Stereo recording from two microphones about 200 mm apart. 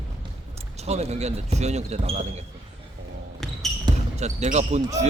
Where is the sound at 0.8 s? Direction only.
35° right (ahead or behind).